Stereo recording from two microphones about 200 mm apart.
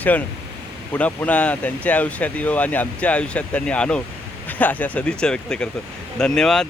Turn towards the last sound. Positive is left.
turn(degrees=0)  # may be behind; listen again after turning